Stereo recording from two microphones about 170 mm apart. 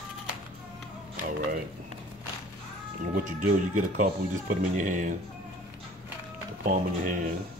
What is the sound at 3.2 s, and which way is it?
Speech, 55° right (ahead or behind).